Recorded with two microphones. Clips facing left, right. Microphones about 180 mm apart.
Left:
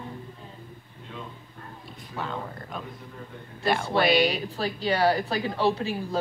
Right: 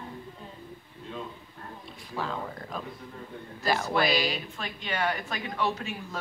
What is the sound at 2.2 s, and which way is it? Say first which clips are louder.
Speech: even; centre (ahead or behind).